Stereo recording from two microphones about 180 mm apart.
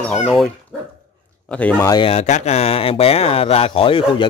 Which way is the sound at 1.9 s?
30° left (ahead or behind).